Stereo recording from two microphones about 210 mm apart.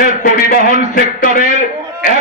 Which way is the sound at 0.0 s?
40° left (ahead or behind).